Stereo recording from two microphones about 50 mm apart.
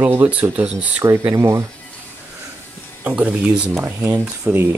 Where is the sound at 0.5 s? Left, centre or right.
Right.